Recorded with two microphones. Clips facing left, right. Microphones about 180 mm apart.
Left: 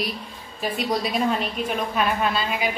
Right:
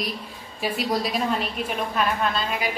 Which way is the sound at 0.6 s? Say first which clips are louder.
Even; 5° right (ahead or behind).